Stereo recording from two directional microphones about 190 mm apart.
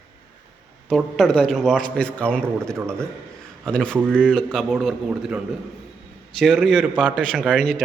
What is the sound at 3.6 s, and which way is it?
A man's voice, 5° left (ahead or behind).